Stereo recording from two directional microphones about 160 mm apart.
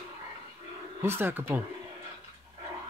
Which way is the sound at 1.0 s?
15° right (ahead or behind).